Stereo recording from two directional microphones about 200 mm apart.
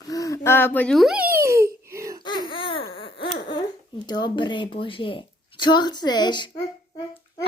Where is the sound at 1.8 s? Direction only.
15° right (ahead or behind).